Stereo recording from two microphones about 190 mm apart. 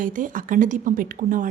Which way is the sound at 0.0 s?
45° right (ahead or behind).